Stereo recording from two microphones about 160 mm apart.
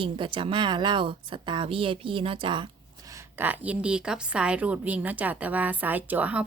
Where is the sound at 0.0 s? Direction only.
30° right (ahead or behind).